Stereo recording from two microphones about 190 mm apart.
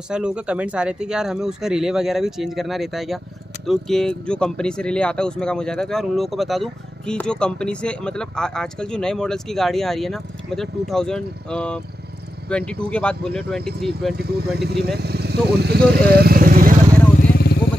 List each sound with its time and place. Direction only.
0.1 s speech: 5° right (ahead or behind)
14.1 s speech: 60° right (ahead or behind)